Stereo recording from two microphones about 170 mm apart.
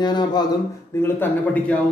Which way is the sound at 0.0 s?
25° left (ahead or behind).